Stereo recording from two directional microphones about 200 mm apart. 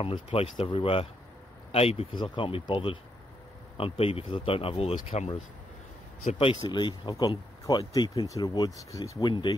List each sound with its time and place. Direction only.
0.0 s speech: 25° left (ahead or behind)